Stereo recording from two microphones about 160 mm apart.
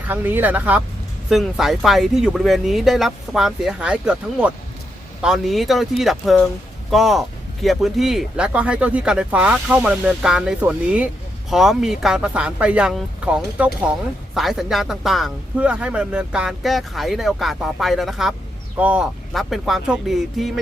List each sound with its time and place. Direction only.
0.1 s speech: 10° right (ahead or behind)